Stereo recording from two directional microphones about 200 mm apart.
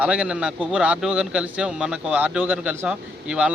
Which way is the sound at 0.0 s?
5° right (ahead or behind).